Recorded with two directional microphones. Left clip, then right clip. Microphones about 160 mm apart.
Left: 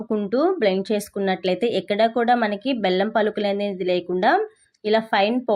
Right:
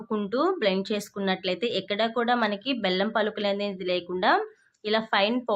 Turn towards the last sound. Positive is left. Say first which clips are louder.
# left 5 dB
turn(degrees=15)  # may be behind; listen again after turning